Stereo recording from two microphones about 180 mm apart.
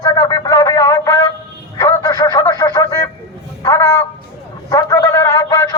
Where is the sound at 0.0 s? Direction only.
20° left (ahead or behind).